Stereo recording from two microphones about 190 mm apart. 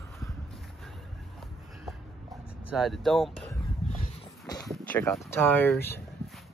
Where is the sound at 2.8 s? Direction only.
Centre (ahead or behind).